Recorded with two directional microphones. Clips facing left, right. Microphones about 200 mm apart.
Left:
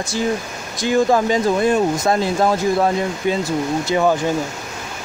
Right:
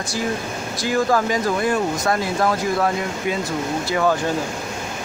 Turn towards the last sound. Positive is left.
turn(degrees=15)  # may be behind; listen again after turning